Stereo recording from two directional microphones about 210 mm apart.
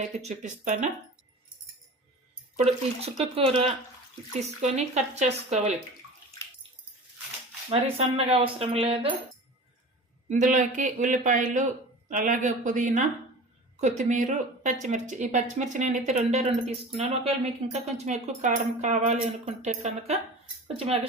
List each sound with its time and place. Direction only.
0.2 s speech: 35° right (ahead or behind)
2.6 s speech: 30° right (ahead or behind)
7.7 s speech: 30° right (ahead or behind)
10.2 s speech: 35° right (ahead or behind)